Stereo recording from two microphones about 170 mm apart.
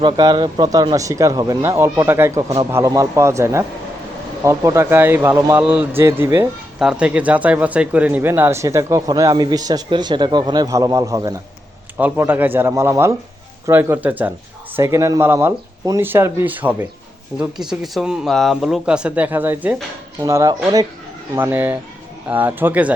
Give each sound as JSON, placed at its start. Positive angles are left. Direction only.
{"t": 0.0, "sound": "speech", "side_deg": -25}
{"t": 5.6, "sound": "speech", "side_deg": -5}